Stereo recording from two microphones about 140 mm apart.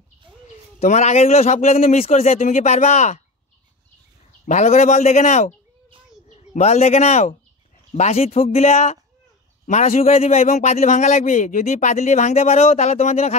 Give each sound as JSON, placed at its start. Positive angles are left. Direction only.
{"t": 0.7, "sound": "a man's voice", "side_deg": 55}
{"t": 4.5, "sound": "a man's voice", "side_deg": 55}